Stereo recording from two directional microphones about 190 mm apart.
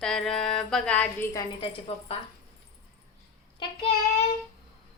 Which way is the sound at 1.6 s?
30° left (ahead or behind).